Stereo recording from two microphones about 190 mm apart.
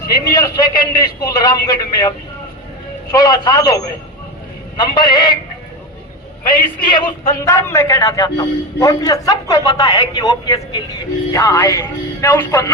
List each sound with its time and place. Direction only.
0.1 s a man's voice: 20° left (ahead or behind)
4.8 s a man's voice: 25° left (ahead or behind)
6.9 s a man's voice: 15° left (ahead or behind)
11.3 s music: 15° left (ahead or behind)